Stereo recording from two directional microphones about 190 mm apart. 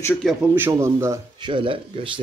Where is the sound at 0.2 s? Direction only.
Centre (ahead or behind).